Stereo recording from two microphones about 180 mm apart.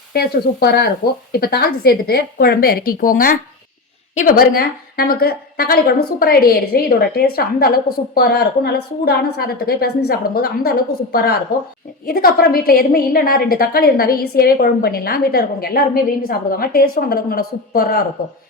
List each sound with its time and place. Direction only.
0.1 s a woman's voice: 60° left (ahead or behind)